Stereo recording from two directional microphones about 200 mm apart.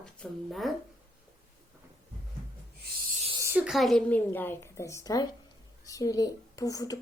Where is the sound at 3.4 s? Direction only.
5° right (ahead or behind).